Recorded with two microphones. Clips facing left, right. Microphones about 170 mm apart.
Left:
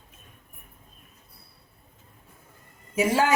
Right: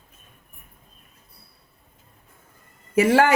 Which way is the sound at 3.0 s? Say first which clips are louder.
Right 6 dB; 65° right (ahead or behind).